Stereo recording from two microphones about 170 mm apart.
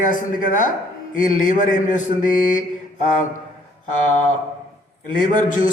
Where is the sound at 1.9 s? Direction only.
50° left (ahead or behind).